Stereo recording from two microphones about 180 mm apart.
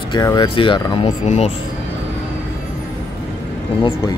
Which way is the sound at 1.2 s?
40° left (ahead or behind).